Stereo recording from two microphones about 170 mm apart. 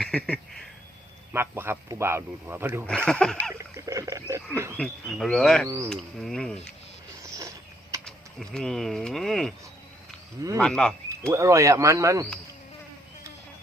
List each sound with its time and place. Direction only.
0.0 s duck: 5° left (ahead or behind)
1.3 s speech: 15° right (ahead or behind)
3.1 s speech: 5° left (ahead or behind)
3.6 s speech: 20° right (ahead or behind)
4.8 s speech: 5° left (ahead or behind)
5.6 s speech: 20° right (ahead or behind)
5.9 s speech: centre (ahead or behind)
7.2 s a sound: 20° right (ahead or behind)
8.0 s speech: 5° left (ahead or behind)
10.6 s speech: 5° left (ahead or behind)
11.3 s speech: 20° right (ahead or behind)